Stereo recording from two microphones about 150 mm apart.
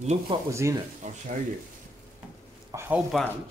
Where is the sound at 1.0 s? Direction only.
55° right (ahead or behind).